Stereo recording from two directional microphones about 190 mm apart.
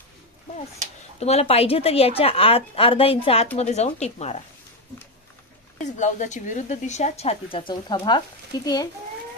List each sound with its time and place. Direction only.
1.2 s a woman's voice: 30° left (ahead or behind)
5.8 s a woman's voice: 40° left (ahead or behind); by 8.7 s 20° left (ahead or behind)